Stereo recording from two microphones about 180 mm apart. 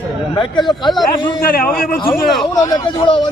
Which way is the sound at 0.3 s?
25° left (ahead or behind).